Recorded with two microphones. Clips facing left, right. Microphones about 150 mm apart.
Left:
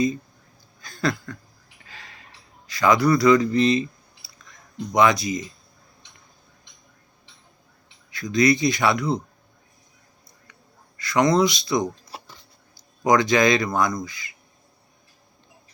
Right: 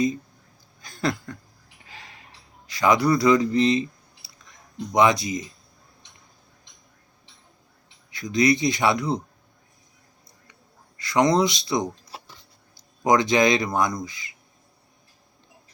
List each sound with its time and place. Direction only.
0.8 s a sound: 20° right (ahead or behind)
2.6 s speech: 25° right (ahead or behind)
4.4 s a sound: 20° right (ahead or behind)
8.1 s speech: 20° right (ahead or behind)
10.9 s speech: 25° right (ahead or behind)
13.1 s speech: 25° right (ahead or behind)